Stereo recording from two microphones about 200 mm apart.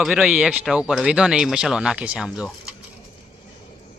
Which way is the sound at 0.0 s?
5° right (ahead or behind).